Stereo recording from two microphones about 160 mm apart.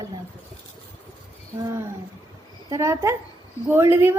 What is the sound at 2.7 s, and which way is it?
A woman's voice, 20° right (ahead or behind).